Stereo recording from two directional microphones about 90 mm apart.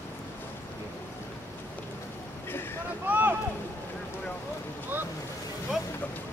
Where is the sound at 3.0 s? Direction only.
20° right (ahead or behind).